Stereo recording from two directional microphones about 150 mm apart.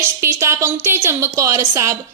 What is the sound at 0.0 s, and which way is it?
A woman's voice, 15° right (ahead or behind).